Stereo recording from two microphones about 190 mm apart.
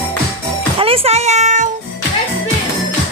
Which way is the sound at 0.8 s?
30° right (ahead or behind).